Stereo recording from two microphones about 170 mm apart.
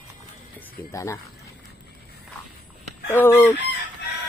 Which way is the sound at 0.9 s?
15° left (ahead or behind).